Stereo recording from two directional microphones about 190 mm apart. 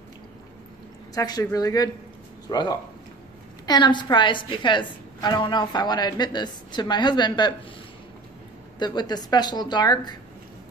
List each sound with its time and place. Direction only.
1.1 s a woman's voice: 20° left (ahead or behind)
8.7 s a woman's voice: 20° left (ahead or behind)